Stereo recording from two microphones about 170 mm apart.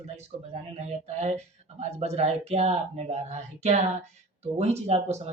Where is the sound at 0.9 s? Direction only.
40° right (ahead or behind).